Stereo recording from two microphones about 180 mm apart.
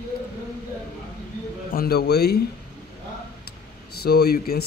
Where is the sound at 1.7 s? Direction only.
55° left (ahead or behind).